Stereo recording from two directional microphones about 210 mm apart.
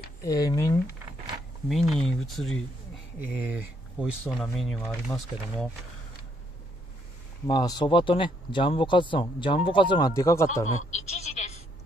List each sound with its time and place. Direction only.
0.2 s speech: 15° left (ahead or behind)
1.7 s speech: centre (ahead or behind)
7.4 s speech: 20° left (ahead or behind)
10.6 s a sound: 35° left (ahead or behind)